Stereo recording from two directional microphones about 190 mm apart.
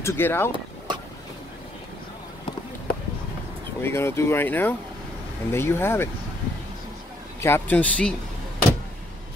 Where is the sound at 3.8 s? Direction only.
15° left (ahead or behind).